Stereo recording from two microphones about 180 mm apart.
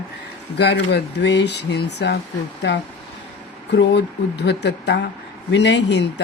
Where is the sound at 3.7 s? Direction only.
75° left (ahead or behind).